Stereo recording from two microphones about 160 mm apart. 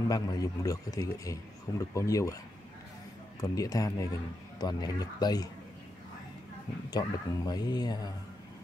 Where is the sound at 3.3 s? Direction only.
20° left (ahead or behind).